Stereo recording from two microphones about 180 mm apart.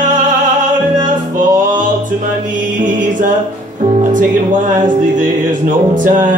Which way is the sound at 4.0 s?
45° right (ahead or behind).